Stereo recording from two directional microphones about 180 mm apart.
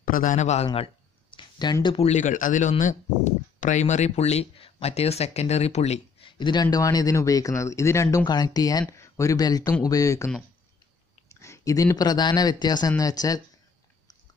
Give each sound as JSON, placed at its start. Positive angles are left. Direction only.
{"t": 0.0, "sound": "a man's voice", "side_deg": 50}
{"t": 1.3, "sound": "speech", "side_deg": 25}
{"t": 11.3, "sound": "speech", "side_deg": 15}